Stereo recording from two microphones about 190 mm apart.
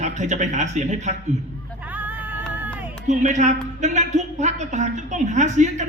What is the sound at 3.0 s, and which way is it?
A man's voice, 40° right (ahead or behind).